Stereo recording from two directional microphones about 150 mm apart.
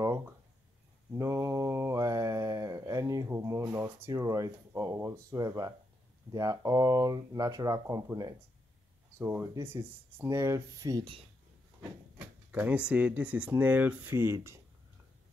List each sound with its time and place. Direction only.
0.0 s a sound: 20° right (ahead or behind)
1.1 s mantra: 20° right (ahead or behind)
6.3 s speech: 20° right (ahead or behind)
12.4 s speech: 10° right (ahead or behind)